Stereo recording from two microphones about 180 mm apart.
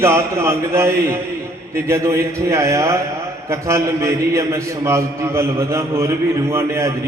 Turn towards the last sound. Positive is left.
turn(degrees=-15)  # may be behind; listen again after turning